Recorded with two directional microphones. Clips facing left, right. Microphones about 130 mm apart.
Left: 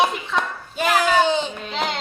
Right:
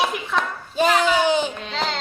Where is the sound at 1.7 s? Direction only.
15° left (ahead or behind).